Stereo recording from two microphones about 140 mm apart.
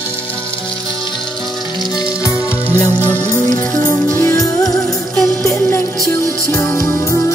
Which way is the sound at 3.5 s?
15° left (ahead or behind).